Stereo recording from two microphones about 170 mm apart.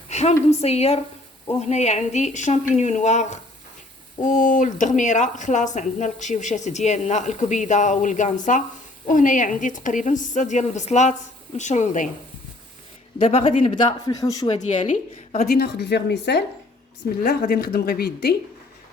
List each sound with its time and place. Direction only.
0.1 s a sound: 40° left (ahead or behind)
0.6 s speech: 40° left (ahead or behind)
13.2 s speech: 35° left (ahead or behind)
14.5 s speech: 40° left (ahead or behind)
15.4 s speech: 70° left (ahead or behind); by 16.4 s 85° left
17.2 s a woman's voice: 60° left (ahead or behind)